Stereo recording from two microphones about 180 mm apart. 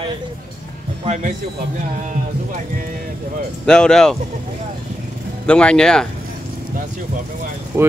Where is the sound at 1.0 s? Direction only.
40° right (ahead or behind).